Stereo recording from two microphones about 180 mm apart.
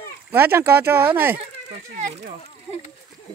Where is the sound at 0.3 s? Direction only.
10° right (ahead or behind).